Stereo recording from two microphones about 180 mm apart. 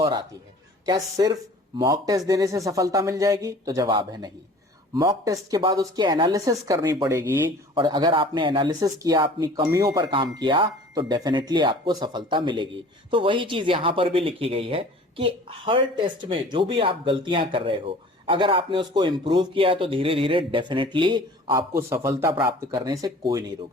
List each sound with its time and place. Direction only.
0.0 s a man's voice: 25° right (ahead or behind)
7.8 s speech: 25° right (ahead or behind)
21.8 s a man's voice: 15° right (ahead or behind)
22.3 s speech: 25° right (ahead or behind)